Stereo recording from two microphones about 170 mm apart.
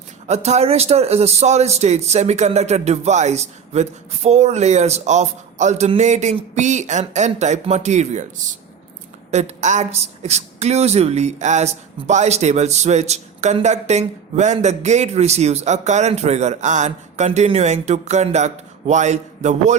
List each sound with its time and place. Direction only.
0.3 s a man's voice: 40° right (ahead or behind)
9.3 s speech: 40° right (ahead or behind)